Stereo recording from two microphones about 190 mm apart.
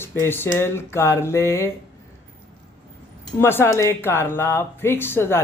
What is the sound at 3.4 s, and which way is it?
Speech, 10° left (ahead or behind).